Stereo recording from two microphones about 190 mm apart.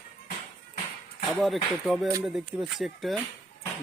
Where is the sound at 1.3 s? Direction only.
Centre (ahead or behind).